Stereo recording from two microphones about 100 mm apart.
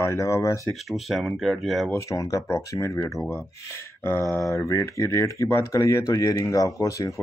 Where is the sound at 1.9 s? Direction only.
35° left (ahead or behind).